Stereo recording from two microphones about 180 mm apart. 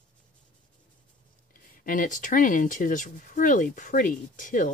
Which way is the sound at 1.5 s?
50° left (ahead or behind).